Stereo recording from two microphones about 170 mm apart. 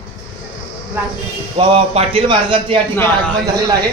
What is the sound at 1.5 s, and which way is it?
A man's voice, 35° right (ahead or behind).